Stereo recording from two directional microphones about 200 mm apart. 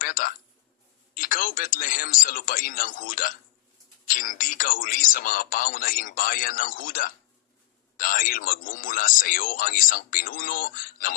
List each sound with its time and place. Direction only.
0.0 s speech: 45° left (ahead or behind)